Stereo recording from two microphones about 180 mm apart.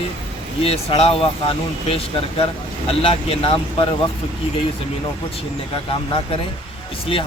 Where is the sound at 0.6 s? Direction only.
35° left (ahead or behind).